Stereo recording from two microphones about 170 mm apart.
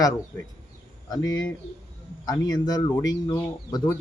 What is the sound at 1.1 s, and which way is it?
Speech, 25° left (ahead or behind).